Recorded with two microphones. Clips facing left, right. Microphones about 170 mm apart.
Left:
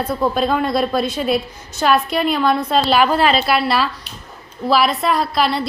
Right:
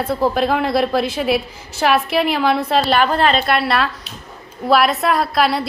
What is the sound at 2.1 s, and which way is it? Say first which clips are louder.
Speech: right 1 dB; 70° right (ahead or behind).